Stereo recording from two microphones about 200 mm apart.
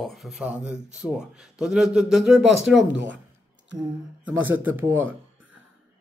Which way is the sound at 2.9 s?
65° right (ahead or behind).